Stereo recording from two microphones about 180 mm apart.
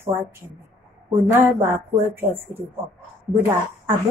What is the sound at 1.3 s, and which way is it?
Speech, 15° right (ahead or behind).